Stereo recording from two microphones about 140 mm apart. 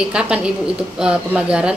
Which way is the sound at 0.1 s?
5° right (ahead or behind).